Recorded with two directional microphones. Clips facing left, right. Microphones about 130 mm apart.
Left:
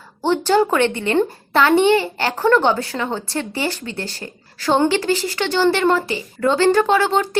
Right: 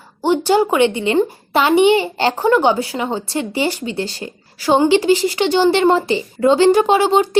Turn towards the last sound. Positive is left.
turn(degrees=-15)  # may be behind; listen again after turning